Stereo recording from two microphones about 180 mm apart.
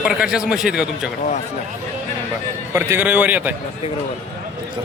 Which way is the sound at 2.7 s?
10° right (ahead or behind).